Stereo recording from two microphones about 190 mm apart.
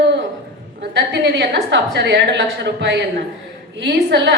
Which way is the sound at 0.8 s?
65° right (ahead or behind).